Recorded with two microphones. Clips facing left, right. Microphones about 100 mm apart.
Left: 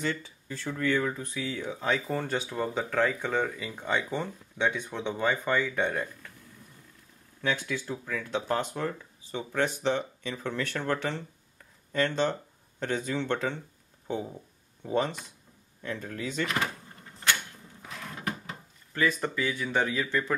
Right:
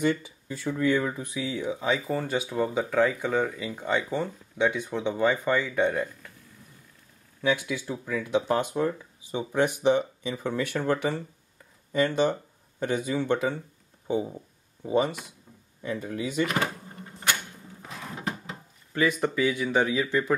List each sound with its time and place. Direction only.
0.0 s speech: 15° right (ahead or behind)
7.4 s speech: 15° right (ahead or behind)
17.8 s music: 15° right (ahead or behind)
18.9 s speech: 15° right (ahead or behind)